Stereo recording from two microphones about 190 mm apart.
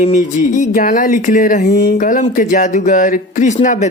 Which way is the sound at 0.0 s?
40° left (ahead or behind).